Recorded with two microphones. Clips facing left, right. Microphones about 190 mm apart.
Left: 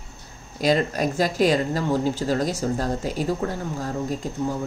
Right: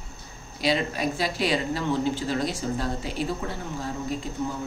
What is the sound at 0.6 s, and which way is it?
Speech, 45° left (ahead or behind).